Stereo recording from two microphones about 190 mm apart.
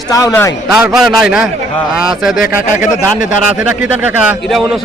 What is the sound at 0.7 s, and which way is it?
A man's voice, centre (ahead or behind).